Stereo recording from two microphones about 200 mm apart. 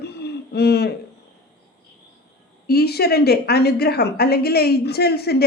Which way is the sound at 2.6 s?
50° left (ahead or behind).